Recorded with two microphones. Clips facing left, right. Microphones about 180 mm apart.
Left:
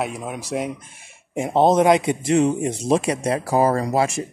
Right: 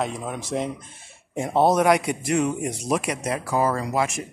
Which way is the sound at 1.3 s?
20° left (ahead or behind).